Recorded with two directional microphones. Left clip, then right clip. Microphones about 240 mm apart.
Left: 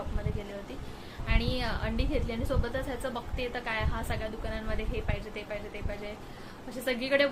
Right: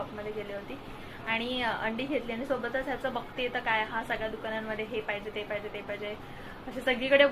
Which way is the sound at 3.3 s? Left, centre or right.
Centre.